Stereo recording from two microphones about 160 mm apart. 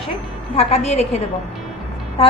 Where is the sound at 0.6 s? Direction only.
45° left (ahead or behind).